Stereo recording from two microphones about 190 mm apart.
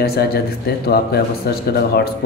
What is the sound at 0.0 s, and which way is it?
Speech, 55° left (ahead or behind).